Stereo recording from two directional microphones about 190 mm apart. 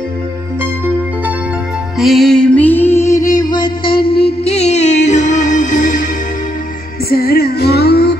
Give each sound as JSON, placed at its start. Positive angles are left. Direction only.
{"t": 2.0, "sound": "music", "side_deg": 0}
{"t": 4.5, "sound": "music", "side_deg": 35}
{"t": 7.1, "sound": "music", "side_deg": 55}